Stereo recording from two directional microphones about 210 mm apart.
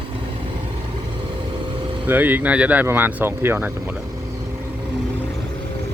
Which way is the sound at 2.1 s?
10° right (ahead or behind).